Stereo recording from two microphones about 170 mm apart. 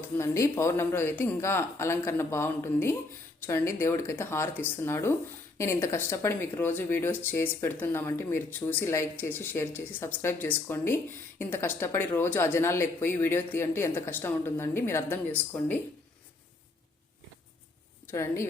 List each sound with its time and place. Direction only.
0.2 s speech: 15° left (ahead or behind)
18.1 s speech: 15° left (ahead or behind)